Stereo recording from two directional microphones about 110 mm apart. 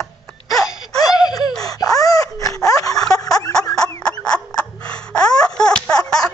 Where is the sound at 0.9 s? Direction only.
35° left (ahead or behind).